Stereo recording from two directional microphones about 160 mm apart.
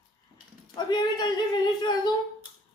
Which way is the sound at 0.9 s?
25° left (ahead or behind).